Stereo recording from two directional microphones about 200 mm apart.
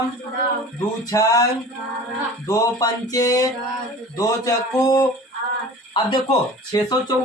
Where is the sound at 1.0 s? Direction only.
15° left (ahead or behind).